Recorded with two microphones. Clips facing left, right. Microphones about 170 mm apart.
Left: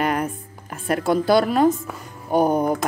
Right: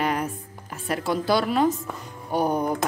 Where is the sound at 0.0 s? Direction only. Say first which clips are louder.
Left 3 dB; 50° left (ahead or behind).